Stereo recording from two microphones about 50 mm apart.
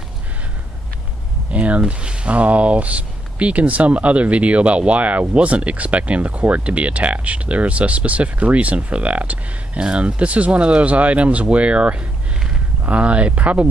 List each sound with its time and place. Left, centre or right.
1.5 s speech: right